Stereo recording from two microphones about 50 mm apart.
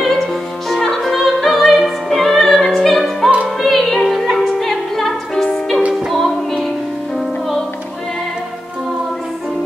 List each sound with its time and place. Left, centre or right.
0.0 s opera: centre